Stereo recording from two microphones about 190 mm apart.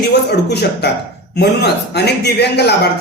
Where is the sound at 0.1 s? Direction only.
60° left (ahead or behind).